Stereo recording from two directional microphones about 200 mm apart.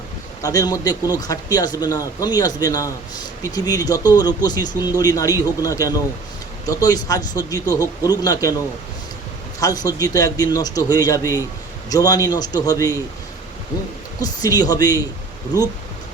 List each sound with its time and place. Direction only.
0.4 s a man's voice: 20° left (ahead or behind)
14.2 s speech: 20° left (ahead or behind)